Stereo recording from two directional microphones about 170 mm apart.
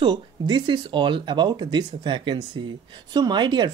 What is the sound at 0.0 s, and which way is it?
Speech, 25° right (ahead or behind).